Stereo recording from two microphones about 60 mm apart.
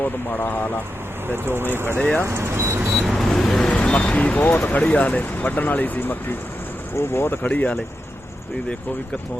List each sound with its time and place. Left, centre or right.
0.0 s speech: left
1.3 s speech: right
2.2 s a sound: right
2.9 s speech: centre; by 7.3 s left
7.4 s speech: left